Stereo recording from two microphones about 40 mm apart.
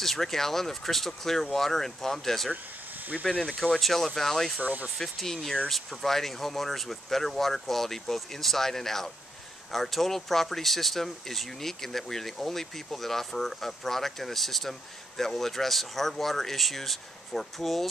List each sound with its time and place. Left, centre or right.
0.0 s speech: centre
3.3 s speech: left
3.8 s speech: centre
4.6 s speech: right
4.8 s speech: centre